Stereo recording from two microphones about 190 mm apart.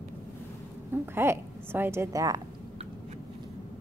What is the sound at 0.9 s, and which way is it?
A woman's voice, 15° right (ahead or behind).